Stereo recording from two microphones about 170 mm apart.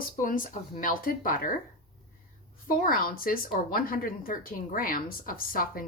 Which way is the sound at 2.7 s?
60° left (ahead or behind).